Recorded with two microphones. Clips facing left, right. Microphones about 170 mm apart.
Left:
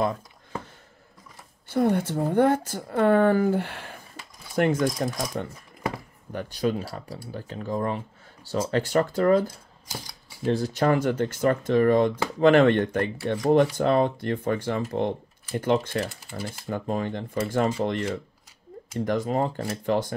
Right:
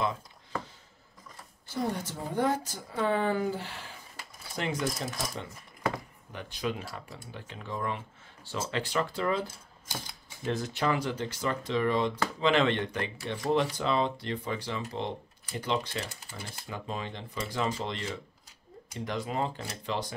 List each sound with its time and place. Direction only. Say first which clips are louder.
1.7 s speech: left 10 dB; 60° left (ahead or behind)
6.3 s speech: left 8 dB; 40° left (ahead or behind)